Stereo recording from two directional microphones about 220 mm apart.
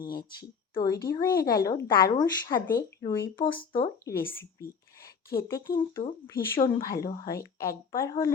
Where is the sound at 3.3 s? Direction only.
25° left (ahead or behind).